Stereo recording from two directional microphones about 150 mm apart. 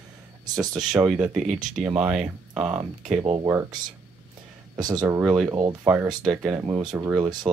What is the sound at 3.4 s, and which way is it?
Speech, 20° right (ahead or behind).